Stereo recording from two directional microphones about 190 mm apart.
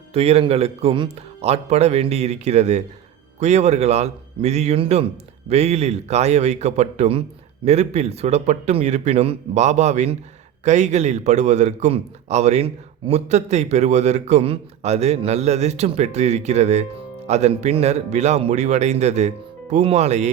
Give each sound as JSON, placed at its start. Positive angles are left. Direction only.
{"t": 0.1, "sound": "a man's voice", "side_deg": -30}